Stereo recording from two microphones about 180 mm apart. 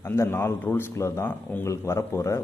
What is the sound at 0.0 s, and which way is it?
A man's voice, 15° left (ahead or behind).